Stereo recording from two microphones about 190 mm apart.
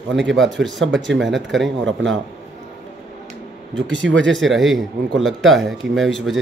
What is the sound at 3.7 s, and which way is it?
Speech, 75° right (ahead or behind).